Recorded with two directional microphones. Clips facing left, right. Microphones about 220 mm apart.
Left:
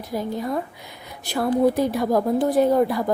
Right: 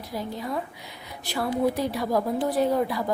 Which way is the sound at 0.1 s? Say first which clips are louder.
Left 5 dB; 50° left (ahead or behind).